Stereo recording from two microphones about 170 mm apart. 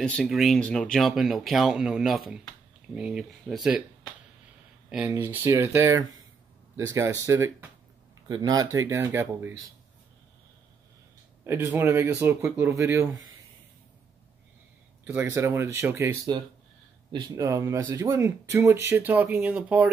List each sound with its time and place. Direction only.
0.0 s speech: 5° left (ahead or behind)
4.8 s speech: 10° right (ahead or behind)
11.4 s speech: 15° right (ahead or behind)
15.0 s speech: 15° right (ahead or behind)